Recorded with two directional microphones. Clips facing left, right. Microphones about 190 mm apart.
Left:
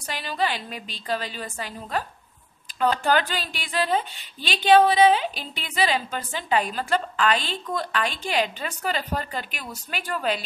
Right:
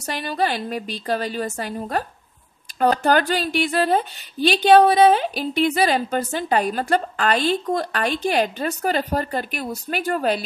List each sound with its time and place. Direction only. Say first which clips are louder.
0.0 s a woman's voice: right 4 dB; 45° right (ahead or behind)